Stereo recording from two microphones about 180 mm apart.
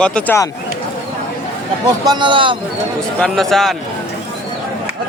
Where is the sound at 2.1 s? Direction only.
25° right (ahead or behind).